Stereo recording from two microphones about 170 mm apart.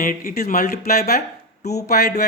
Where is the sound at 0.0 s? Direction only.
55° left (ahead or behind).